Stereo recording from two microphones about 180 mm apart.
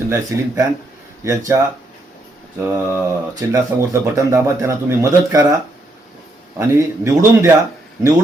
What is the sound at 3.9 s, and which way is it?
Speech, 15° right (ahead or behind).